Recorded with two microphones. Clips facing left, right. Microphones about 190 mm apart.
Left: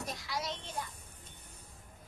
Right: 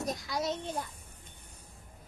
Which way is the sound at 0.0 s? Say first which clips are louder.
Right 6 dB; 45° right (ahead or behind).